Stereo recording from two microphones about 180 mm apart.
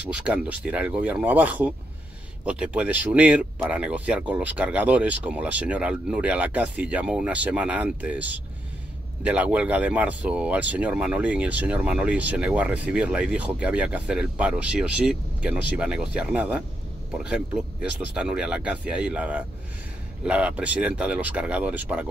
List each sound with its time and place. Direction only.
0.1 s speech: 5° right (ahead or behind)